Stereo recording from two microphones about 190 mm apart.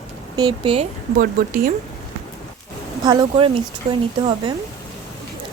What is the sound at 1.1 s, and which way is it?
Speech, 50° right (ahead or behind).